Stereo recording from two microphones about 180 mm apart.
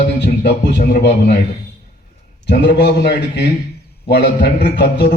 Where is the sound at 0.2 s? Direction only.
70° left (ahead or behind).